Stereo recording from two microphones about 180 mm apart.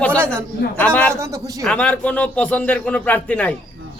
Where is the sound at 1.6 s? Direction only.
5° left (ahead or behind).